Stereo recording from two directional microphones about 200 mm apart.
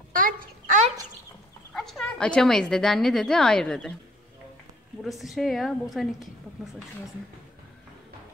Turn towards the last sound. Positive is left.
turn(degrees=0)  # may be behind; listen again after turning